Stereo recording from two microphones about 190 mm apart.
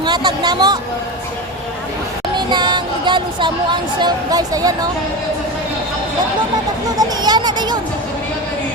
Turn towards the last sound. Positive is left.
turn(degrees=-20)  # may be behind; listen again after turning